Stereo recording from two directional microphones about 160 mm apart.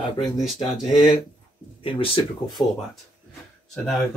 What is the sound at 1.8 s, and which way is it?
Speech, 35° left (ahead or behind).